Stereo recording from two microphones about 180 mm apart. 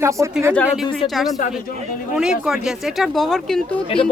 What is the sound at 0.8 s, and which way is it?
Speech, 25° left (ahead or behind).